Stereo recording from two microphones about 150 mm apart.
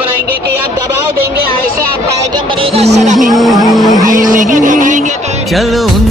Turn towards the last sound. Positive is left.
turn(degrees=0)  # may be behind; listen again after turning